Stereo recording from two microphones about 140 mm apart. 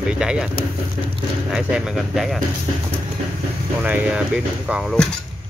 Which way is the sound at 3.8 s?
10° right (ahead or behind).